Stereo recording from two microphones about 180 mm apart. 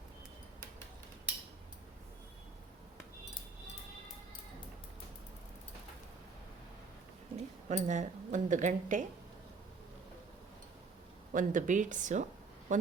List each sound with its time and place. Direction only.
7.3 s speech: 40° right (ahead or behind)
11.3 s a woman's voice: 45° right (ahead or behind)